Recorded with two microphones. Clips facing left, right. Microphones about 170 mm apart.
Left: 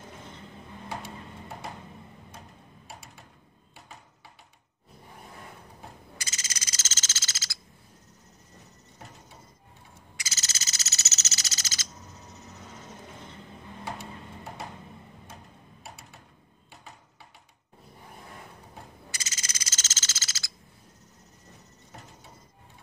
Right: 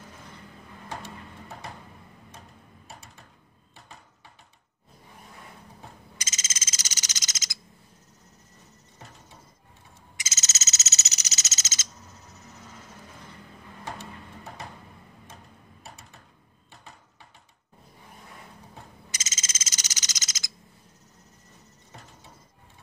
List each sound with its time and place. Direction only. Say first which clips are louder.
6.1 s frog: even; 20° right (ahead or behind)
10.1 s frog: right 1 dB; 20° right (ahead or behind)
19.0 s frog: even; 20° right (ahead or behind)